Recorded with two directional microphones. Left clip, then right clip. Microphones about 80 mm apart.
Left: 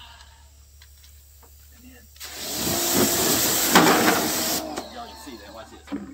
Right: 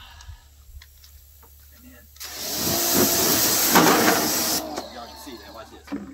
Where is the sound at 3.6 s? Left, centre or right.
Right.